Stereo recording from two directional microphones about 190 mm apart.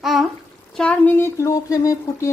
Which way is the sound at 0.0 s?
Centre (ahead or behind).